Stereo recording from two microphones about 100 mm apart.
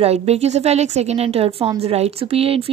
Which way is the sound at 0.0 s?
90° right.